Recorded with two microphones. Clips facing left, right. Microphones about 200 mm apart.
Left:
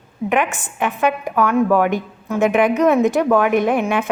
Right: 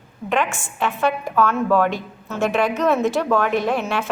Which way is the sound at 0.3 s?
20° left (ahead or behind).